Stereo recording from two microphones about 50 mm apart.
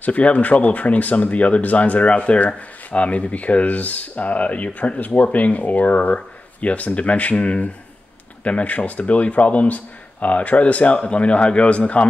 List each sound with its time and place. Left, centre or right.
0.0 s speech: left